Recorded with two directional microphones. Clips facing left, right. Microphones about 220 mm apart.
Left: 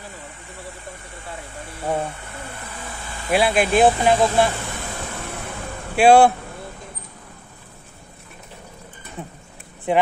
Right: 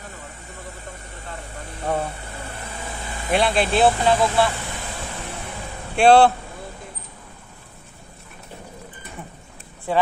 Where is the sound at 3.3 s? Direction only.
10° left (ahead or behind).